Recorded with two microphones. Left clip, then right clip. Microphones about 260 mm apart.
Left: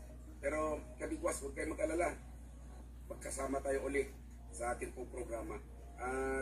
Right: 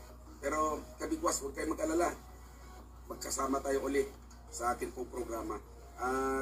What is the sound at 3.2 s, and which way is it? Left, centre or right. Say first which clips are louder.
Speech: right 6 dB; right.